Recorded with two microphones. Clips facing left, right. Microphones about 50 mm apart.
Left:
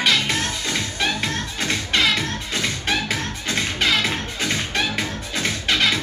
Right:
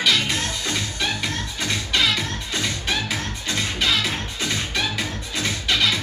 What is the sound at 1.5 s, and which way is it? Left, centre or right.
Music, left.